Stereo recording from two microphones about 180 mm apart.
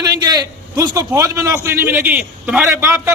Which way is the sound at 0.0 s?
20° right (ahead or behind).